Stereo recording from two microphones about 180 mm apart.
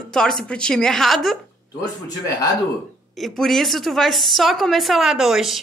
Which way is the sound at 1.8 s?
20° left (ahead or behind).